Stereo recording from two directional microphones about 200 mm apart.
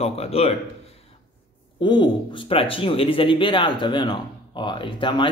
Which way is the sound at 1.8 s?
25° left (ahead or behind).